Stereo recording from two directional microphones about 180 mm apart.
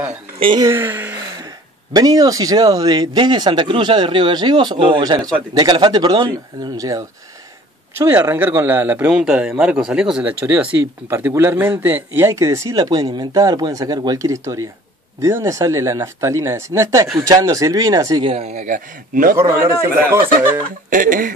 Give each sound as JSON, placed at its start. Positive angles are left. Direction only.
{"t": 0.1, "sound": "speech", "side_deg": -30}
{"t": 8.0, "sound": "speech", "side_deg": -15}
{"t": 18.3, "sound": "speech", "side_deg": -35}
{"t": 19.3, "sound": "speech", "side_deg": -15}
{"t": 20.9, "sound": "speech", "side_deg": -50}